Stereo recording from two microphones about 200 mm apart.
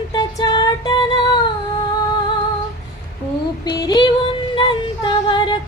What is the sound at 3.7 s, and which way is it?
Female singing, 20° left (ahead or behind).